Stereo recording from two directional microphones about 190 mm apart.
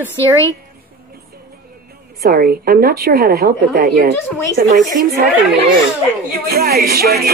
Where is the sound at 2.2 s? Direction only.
55° right (ahead or behind).